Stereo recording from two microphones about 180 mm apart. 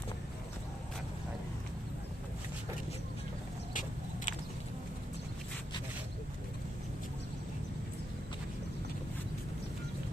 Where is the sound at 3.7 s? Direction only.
45° left (ahead or behind).